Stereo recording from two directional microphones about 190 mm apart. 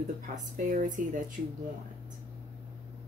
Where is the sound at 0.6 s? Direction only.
45° right (ahead or behind).